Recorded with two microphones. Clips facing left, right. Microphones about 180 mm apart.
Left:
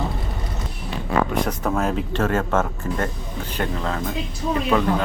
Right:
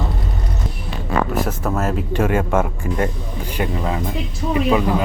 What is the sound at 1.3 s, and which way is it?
Speech, 5° right (ahead or behind).